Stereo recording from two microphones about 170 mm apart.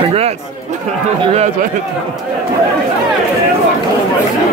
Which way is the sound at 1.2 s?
40° right (ahead or behind).